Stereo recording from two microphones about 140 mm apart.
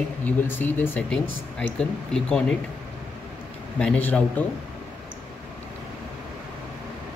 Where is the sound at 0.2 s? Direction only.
10° left (ahead or behind).